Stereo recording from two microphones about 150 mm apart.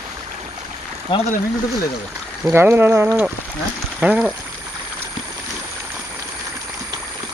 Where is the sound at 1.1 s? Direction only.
35° left (ahead or behind).